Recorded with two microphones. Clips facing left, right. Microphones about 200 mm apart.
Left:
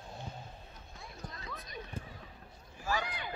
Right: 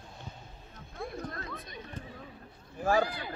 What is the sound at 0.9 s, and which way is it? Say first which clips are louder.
Music: right 11 dB; 55° right (ahead or behind).